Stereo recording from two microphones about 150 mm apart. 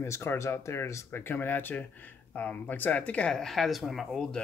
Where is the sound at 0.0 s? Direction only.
15° left (ahead or behind).